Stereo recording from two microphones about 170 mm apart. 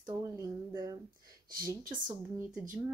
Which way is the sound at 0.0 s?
25° right (ahead or behind).